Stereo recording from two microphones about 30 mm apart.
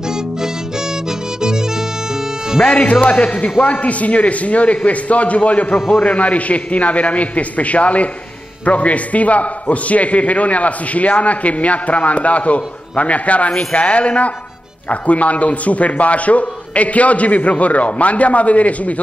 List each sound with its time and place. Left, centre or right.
0.0 s music: right
2.6 s a man's voice: left